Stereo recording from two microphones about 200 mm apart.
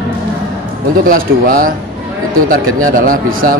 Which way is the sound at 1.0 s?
45° right (ahead or behind).